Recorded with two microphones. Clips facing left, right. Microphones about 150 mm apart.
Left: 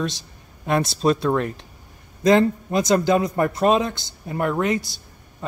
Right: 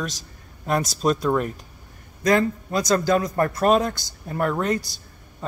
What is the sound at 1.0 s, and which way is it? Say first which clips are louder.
Speech: left 1 dB; centre (ahead or behind).